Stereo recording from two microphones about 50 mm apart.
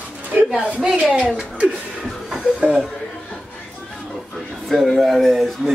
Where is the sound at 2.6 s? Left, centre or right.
Centre.